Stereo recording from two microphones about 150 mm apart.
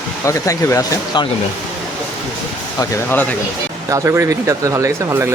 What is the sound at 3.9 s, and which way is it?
Speech, 20° right (ahead or behind).